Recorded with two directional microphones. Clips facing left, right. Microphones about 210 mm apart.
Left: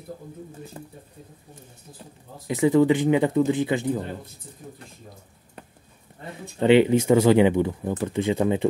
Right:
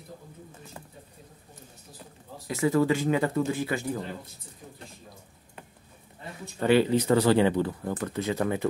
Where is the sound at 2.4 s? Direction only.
20° left (ahead or behind).